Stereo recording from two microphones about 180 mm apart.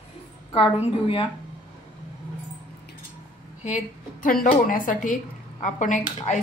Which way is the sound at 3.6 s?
45° left (ahead or behind).